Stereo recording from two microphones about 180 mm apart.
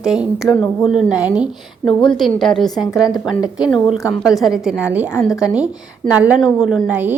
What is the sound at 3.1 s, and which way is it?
Speech, 25° left (ahead or behind).